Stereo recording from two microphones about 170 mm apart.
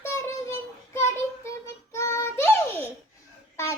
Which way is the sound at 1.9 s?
15° left (ahead or behind).